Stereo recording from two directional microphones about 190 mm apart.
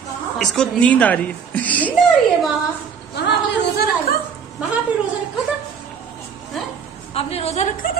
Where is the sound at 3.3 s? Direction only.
65° left (ahead or behind).